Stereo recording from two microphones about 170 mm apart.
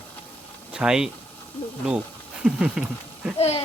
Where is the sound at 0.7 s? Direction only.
5° right (ahead or behind).